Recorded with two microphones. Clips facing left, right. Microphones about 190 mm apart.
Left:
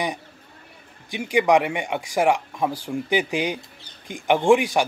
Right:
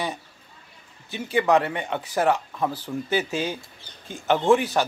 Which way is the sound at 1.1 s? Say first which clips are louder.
Left 2 dB; 15° left (ahead or behind).